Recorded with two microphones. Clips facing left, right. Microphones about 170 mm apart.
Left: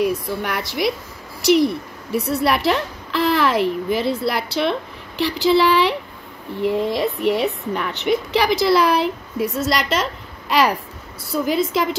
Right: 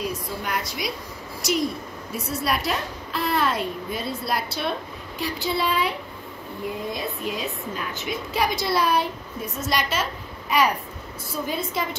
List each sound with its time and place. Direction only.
0.0 s a woman's voice: 65° left (ahead or behind); by 10.0 s 85° left
11.4 s a woman's voice: 90° left